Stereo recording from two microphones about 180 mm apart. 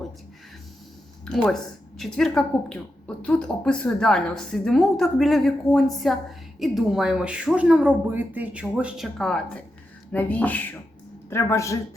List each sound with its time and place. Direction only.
1.2 s speech: 5° left (ahead or behind)